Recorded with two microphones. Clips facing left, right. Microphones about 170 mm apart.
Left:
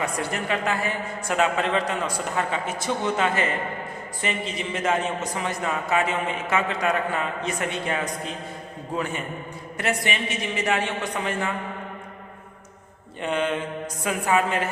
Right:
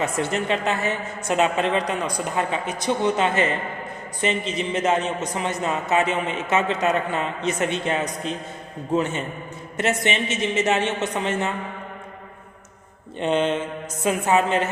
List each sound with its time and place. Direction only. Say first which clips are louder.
0.0 s a man's voice: right 4 dB; 25° right (ahead or behind)
13.1 s speech: right 4 dB; 25° right (ahead or behind)